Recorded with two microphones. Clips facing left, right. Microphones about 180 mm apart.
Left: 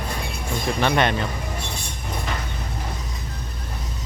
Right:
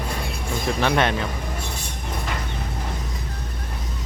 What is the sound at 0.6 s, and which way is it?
Speech, 5° right (ahead or behind).